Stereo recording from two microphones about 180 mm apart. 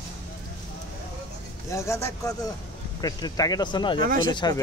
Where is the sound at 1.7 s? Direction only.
15° left (ahead or behind).